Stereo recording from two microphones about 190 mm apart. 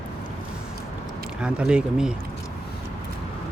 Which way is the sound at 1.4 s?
5° right (ahead or behind).